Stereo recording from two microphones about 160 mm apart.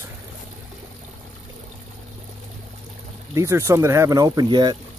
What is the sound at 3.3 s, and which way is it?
Speech, 20° right (ahead or behind).